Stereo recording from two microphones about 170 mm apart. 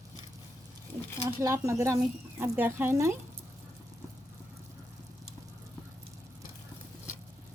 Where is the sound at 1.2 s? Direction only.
20° right (ahead or behind).